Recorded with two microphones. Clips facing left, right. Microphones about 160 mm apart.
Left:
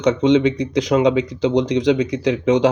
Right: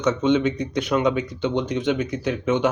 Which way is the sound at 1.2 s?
90° left.